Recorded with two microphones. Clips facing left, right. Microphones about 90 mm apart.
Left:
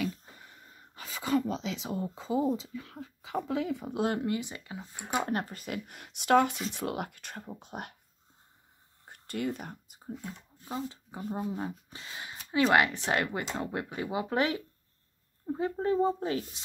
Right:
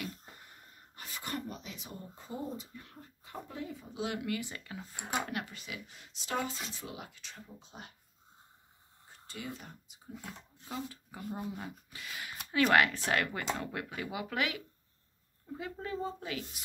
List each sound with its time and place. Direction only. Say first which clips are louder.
1.5 s speech: left 11 dB; 90° left
4.0 s speech: left 6 dB; 40° left (ahead or behind)
4.3 s speech: left 4 dB; 20° left (ahead or behind)
5.3 s speech: left 7 dB; 40° left (ahead or behind); by 7.9 s 60° left (ahead or behind)
9.0 s a sound: left 10 dB; 60° left (ahead or behind)
10.7 s speech: left 4 dB; 25° left (ahead or behind)